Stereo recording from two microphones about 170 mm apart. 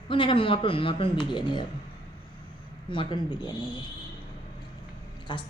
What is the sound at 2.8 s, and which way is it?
Speech, 30° left (ahead or behind).